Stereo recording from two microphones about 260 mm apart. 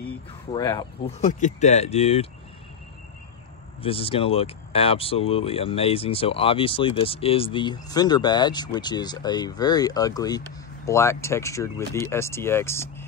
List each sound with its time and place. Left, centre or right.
0.5 s speech: centre
3.8 s speech: left